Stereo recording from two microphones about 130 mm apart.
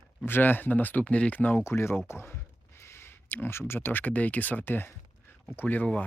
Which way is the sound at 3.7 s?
15° left (ahead or behind).